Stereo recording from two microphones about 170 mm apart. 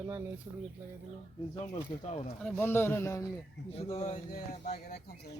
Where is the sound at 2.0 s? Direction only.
40° left (ahead or behind).